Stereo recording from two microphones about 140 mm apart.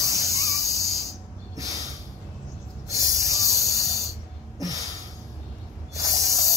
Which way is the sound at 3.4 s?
25° left (ahead or behind).